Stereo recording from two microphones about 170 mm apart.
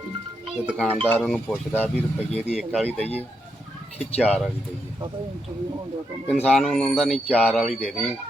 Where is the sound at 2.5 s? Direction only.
5° right (ahead or behind).